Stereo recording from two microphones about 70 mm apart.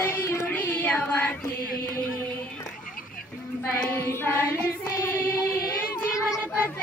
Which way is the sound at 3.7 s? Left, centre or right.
Left.